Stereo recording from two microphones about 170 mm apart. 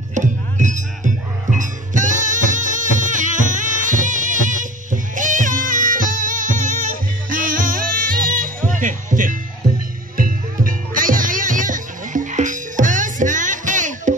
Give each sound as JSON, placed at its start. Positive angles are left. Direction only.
{"t": 0.1, "sound": "music", "side_deg": -45}